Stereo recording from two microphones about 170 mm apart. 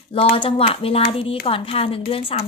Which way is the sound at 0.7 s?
35° left (ahead or behind).